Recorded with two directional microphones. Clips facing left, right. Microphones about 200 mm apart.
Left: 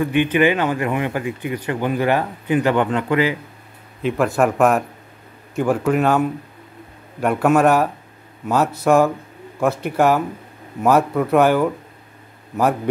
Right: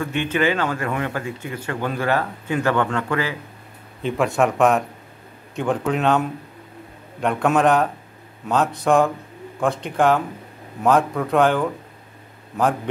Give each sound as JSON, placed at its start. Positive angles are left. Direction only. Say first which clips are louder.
{"t": 0.0, "sound": "speech", "louder": "left 5 dB", "side_deg": 15}
{"t": 4.0, "sound": "speech", "louder": "left 2 dB", "side_deg": 0}